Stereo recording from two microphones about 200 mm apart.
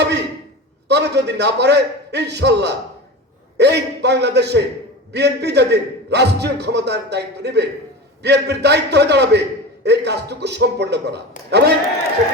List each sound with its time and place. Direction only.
0.9 s a man's voice: 60° right (ahead or behind)